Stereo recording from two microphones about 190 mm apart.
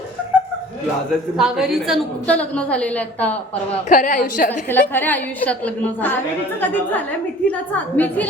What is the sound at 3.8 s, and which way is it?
Speech, 45° left (ahead or behind).